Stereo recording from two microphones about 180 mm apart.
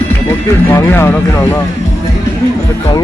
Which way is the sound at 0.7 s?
15° left (ahead or behind).